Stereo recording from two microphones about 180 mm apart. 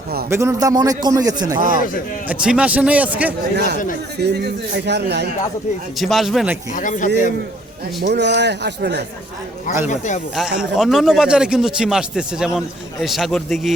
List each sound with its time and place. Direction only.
0.3 s a man's voice: 15° right (ahead or behind)
1.5 s a man's voice: 50° right (ahead or behind)
2.2 s a man's voice: 5° right (ahead or behind)
3.5 s a man's voice: 65° right (ahead or behind)
6.0 s a man's voice: centre (ahead or behind)
6.7 s speech: 45° left (ahead or behind)
8.0 s a man's voice: 70° right (ahead or behind)
9.9 s speech: 45° left (ahead or behind)
10.3 s a man's voice: 5° right (ahead or behind)